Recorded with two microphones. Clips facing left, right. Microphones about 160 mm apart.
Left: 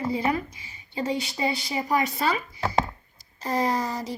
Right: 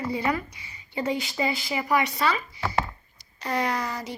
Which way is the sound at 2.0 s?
45° left (ahead or behind).